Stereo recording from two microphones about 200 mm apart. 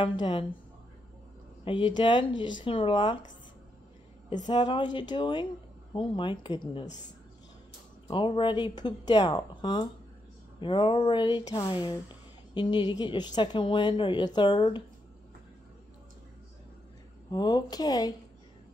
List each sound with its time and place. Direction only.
0.2 s a woman's voice: 25° left (ahead or behind)
1.6 s a woman's voice: 25° left (ahead or behind)
4.5 s a woman's voice: 25° left (ahead or behind)
8.1 s a woman's voice: 25° left (ahead or behind)
17.3 s a woman's voice: 20° left (ahead or behind)